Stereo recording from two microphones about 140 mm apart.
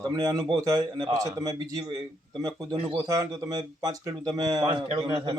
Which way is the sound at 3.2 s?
25° right (ahead or behind).